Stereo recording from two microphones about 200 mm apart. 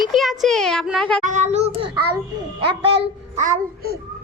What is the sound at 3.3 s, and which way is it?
Speech, 40° right (ahead or behind).